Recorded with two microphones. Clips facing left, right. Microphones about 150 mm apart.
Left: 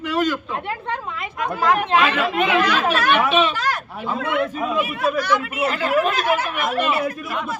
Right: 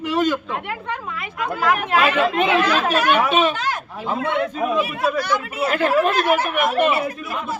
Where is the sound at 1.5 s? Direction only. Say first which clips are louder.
Left 2 dB; 20° left (ahead or behind).